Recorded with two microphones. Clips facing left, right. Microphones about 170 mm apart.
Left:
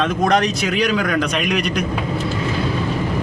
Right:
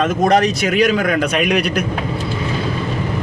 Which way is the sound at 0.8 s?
50° right (ahead or behind).